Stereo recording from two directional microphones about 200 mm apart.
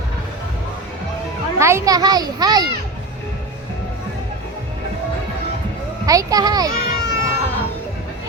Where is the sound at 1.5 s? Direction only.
15° right (ahead or behind).